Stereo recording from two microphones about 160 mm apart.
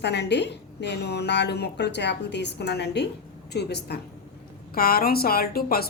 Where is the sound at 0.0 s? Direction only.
90° left.